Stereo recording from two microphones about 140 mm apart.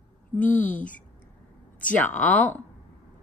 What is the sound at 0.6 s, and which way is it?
Speech, 65° left (ahead or behind).